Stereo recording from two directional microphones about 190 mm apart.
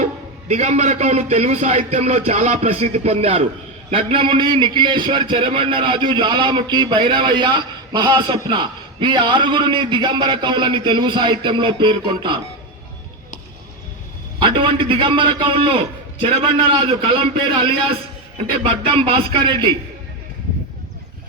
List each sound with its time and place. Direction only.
0.0 s a man's voice: 35° right (ahead or behind)
14.3 s a man's voice: 25° right (ahead or behind)